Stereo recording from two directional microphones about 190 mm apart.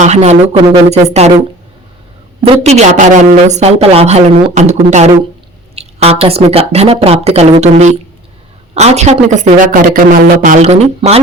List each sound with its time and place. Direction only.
0.0 s a woman's voice: 35° right (ahead or behind)
2.4 s a woman's voice: 35° right (ahead or behind)